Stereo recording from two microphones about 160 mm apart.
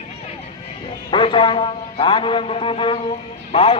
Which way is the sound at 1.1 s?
30° left (ahead or behind).